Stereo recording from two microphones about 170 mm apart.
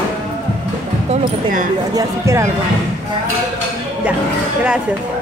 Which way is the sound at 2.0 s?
15° right (ahead or behind).